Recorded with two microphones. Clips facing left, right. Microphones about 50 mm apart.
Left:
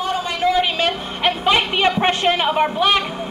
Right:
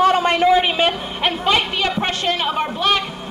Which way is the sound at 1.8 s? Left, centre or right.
Left.